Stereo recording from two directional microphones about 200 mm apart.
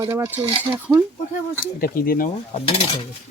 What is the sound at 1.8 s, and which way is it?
Speech, 45° left (ahead or behind).